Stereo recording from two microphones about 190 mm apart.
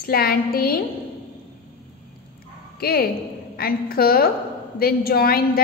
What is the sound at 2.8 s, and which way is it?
A woman's voice, 50° left (ahead or behind).